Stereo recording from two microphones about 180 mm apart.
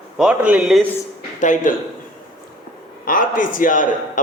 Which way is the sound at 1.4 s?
45° left (ahead or behind).